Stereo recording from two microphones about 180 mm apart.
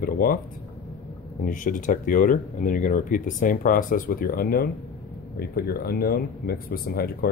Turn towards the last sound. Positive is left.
turn(degrees=60)  # may be behind; listen again after turning